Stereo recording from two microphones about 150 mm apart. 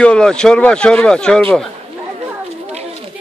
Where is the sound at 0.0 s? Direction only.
5° left (ahead or behind).